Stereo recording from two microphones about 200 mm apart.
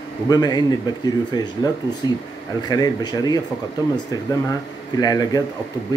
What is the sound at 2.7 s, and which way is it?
Speech, 20° left (ahead or behind).